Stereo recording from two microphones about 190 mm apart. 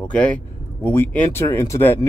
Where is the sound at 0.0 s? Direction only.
5° left (ahead or behind).